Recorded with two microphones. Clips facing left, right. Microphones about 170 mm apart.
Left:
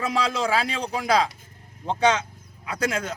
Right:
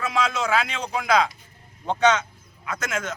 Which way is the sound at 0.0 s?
35° left (ahead or behind).